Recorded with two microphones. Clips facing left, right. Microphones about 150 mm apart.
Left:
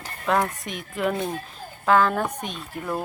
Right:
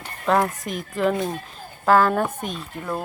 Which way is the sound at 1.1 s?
10° right (ahead or behind).